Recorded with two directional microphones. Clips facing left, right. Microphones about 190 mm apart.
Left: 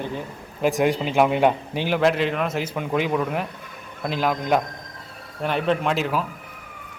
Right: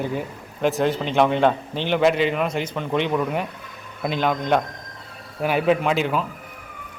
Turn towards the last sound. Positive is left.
turn(degrees=0)  # may be behind; listen again after turning